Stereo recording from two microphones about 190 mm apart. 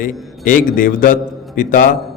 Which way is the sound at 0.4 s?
45° left (ahead or behind).